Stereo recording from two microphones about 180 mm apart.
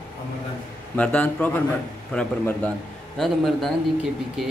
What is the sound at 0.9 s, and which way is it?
A man's voice, 5° left (ahead or behind).